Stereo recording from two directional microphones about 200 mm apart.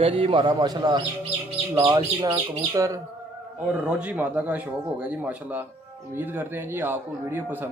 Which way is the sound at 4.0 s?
5° right (ahead or behind).